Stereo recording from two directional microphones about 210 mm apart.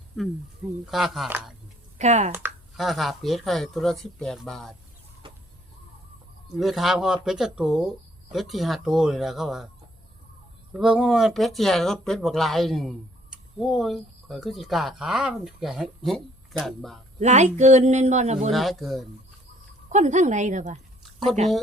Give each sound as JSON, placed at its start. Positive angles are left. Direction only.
{"t": 0.9, "sound": "speech", "side_deg": 0}
{"t": 2.0, "sound": "speech", "side_deg": -35}
{"t": 2.7, "sound": "speech", "side_deg": 0}
{"t": 5.2, "sound": "chicken", "side_deg": -25}
{"t": 6.6, "sound": "speech", "side_deg": 0}
{"t": 10.8, "sound": "speech", "side_deg": -5}
{"t": 17.2, "sound": "speech", "side_deg": -35}
{"t": 18.5, "sound": "speech", "side_deg": 0}
{"t": 19.9, "sound": "speech", "side_deg": -35}